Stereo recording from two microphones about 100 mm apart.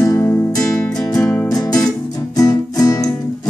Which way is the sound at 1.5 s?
40° left (ahead or behind).